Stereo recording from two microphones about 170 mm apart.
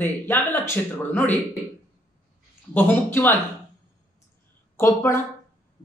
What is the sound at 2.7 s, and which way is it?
Speech, 10° left (ahead or behind).